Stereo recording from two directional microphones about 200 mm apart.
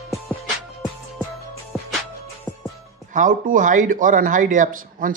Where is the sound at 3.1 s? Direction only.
40° right (ahead or behind).